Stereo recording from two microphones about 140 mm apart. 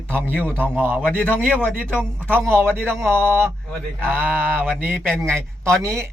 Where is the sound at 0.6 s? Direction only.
15° right (ahead or behind).